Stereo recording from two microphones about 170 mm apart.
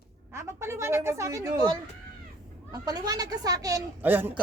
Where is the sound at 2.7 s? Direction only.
20° right (ahead or behind).